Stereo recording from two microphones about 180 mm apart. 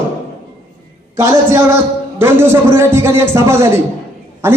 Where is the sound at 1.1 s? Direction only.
15° right (ahead or behind).